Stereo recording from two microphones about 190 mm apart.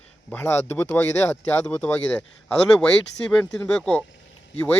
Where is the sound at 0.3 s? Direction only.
10° left (ahead or behind).